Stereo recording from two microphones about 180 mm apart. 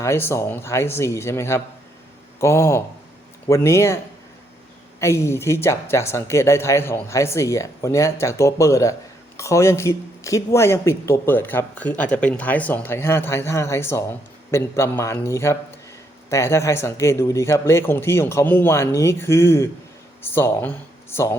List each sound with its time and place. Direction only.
0.0 s speech: 15° left (ahead or behind)
4.9 s speech: 15° left (ahead or behind)